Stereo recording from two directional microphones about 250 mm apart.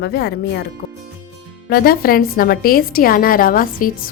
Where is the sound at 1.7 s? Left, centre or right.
Left.